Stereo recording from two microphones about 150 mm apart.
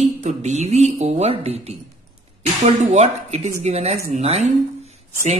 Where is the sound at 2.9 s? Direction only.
45° right (ahead or behind).